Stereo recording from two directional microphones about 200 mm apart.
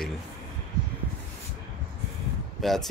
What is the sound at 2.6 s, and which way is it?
Speech, centre (ahead or behind).